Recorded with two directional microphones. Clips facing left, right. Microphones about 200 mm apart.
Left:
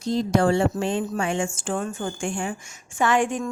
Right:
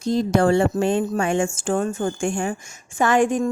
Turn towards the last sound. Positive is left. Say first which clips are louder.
# right 4 dB
turn(degrees=-40)  # may be behind; listen again after turning